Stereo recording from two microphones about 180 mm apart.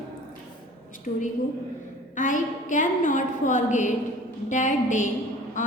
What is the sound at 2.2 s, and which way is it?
A woman's voice, 45° left (ahead or behind).